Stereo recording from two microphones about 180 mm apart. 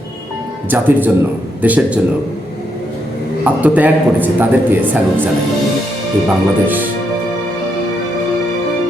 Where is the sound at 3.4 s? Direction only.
10° right (ahead or behind).